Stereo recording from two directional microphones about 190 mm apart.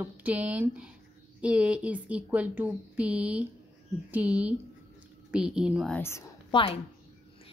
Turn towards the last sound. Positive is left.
turn(degrees=30)  # may be behind; listen again after turning